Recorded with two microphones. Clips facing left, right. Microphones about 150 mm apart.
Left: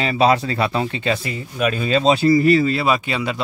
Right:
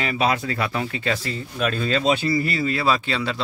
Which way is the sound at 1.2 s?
10° left (ahead or behind).